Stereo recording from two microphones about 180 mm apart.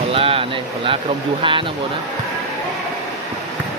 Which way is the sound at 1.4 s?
30° right (ahead or behind).